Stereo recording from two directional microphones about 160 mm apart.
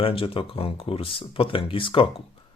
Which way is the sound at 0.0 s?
35° left (ahead or behind).